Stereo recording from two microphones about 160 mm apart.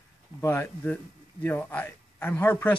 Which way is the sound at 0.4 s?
15° left (ahead or behind).